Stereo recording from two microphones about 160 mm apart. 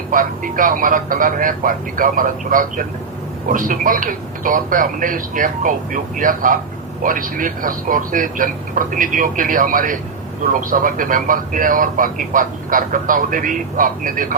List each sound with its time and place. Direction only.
0.1 s speech: 60° right (ahead or behind)